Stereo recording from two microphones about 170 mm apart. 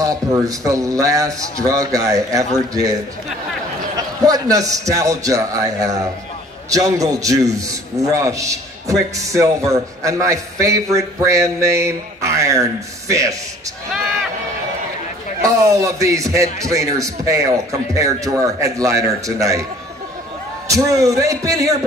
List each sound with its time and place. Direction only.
0.0 s a man's voice: 20° right (ahead or behind)
15.8 s a man's voice: 20° right (ahead or behind)
20.6 s a man's voice: 20° right (ahead or behind)